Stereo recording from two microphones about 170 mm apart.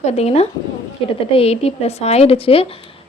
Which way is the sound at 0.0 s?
40° left (ahead or behind).